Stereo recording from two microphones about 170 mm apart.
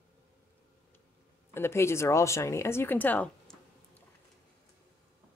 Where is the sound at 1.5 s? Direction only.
15° left (ahead or behind).